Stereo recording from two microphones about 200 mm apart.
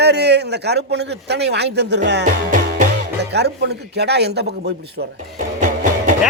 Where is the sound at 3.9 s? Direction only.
55° right (ahead or behind).